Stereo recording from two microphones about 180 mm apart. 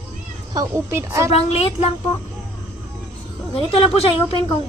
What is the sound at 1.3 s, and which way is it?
Speech, 35° left (ahead or behind).